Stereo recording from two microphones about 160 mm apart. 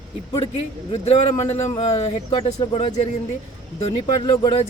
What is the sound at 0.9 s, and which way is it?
A man's voice, 40° left (ahead or behind).